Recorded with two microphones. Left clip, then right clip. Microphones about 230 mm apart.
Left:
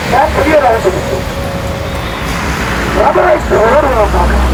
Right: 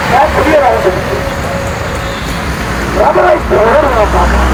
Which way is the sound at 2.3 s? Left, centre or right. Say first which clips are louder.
Left 1 dB; centre.